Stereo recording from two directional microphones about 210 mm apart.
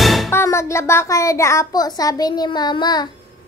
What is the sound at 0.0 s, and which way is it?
Music, centre (ahead or behind).